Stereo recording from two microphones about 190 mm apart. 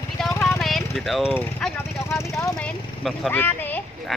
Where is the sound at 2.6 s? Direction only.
5° left (ahead or behind).